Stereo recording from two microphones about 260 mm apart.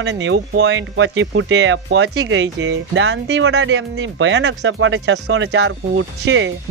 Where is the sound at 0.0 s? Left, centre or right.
Right.